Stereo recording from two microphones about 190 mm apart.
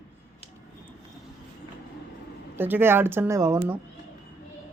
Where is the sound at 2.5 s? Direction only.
10° right (ahead or behind).